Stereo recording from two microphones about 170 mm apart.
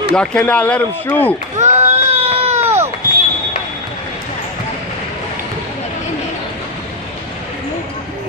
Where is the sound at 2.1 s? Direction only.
40° right (ahead or behind).